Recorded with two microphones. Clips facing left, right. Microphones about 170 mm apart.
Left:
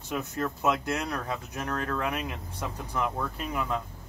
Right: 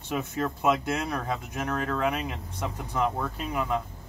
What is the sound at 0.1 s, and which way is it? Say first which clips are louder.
Speech: right 2 dB; 20° right (ahead or behind).